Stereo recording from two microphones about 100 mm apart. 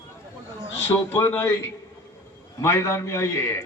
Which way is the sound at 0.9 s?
25° left (ahead or behind).